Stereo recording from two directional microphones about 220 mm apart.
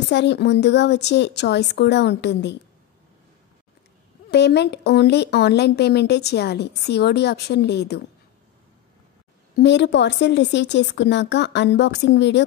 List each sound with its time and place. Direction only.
0.1 s speech: 50° left (ahead or behind)
4.3 s speech: 50° left (ahead or behind)
9.6 s speech: 50° left (ahead or behind)